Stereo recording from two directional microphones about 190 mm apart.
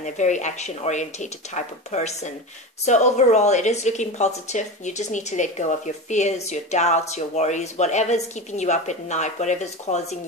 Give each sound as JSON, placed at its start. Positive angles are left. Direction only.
{"t": 0.0, "sound": "a woman's voice", "side_deg": 40}